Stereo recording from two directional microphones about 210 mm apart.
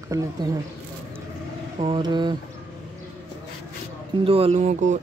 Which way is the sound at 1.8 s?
20° right (ahead or behind).